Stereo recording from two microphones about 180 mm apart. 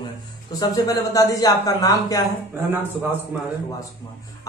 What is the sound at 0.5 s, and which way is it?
Speech, 20° left (ahead or behind).